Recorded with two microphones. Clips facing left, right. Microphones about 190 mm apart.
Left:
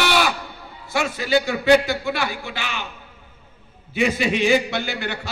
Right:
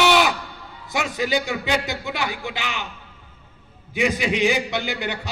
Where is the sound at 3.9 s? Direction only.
15° right (ahead or behind).